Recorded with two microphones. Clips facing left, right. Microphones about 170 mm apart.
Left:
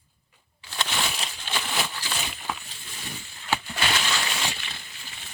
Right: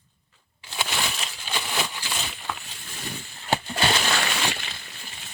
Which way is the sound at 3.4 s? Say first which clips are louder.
Right 3 dB; 40° right (ahead or behind).